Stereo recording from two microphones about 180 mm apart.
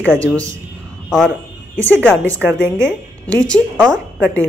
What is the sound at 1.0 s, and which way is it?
A man's voice, centre (ahead or behind).